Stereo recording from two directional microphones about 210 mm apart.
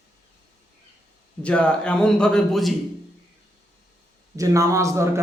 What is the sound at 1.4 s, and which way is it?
A man's voice, 5° left (ahead or behind).